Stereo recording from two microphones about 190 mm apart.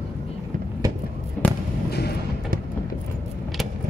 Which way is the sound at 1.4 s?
5° left (ahead or behind).